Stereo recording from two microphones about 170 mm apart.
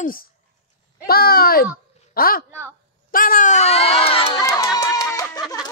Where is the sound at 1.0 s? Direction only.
60° left (ahead or behind); by 4.4 s 35° left (ahead or behind).